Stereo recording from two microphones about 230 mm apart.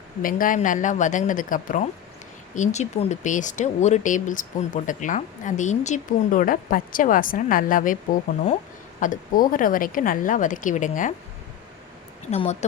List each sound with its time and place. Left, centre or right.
0.2 s speech: left
9.0 s speech: left
12.3 s speech: left